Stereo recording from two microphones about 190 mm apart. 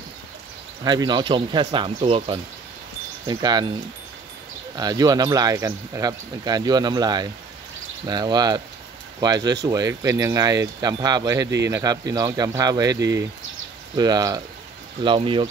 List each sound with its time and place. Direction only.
0.8 s speech: 25° right (ahead or behind)
4.7 s speech: 20° right (ahead or behind)